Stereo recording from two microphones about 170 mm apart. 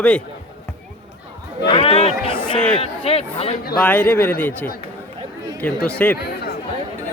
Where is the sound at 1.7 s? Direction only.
35° left (ahead or behind).